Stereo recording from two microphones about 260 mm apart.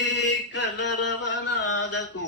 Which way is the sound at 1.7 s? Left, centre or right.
Left.